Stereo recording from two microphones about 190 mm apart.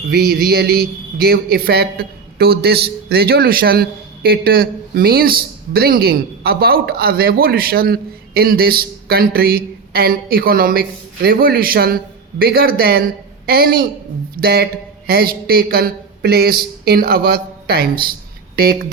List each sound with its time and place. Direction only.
0.1 s a man's voice: 50° right (ahead or behind)